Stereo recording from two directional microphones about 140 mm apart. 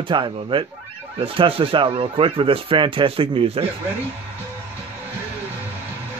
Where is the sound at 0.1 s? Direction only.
35° right (ahead or behind).